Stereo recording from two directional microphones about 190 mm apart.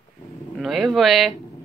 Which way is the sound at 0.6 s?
Centre (ahead or behind).